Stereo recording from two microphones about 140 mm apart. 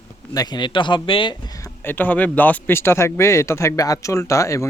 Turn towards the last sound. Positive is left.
turn(degrees=20)  # may be behind; listen again after turning